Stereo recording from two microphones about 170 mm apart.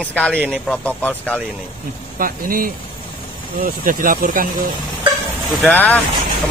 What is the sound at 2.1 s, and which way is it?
Speech, 55° right (ahead or behind).